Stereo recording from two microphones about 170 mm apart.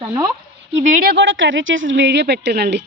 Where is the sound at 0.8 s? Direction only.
55° right (ahead or behind); by 2.8 s 85° right.